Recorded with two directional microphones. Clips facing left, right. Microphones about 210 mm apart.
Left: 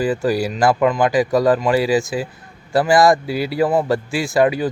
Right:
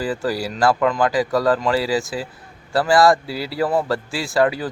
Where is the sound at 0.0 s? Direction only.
15° left (ahead or behind).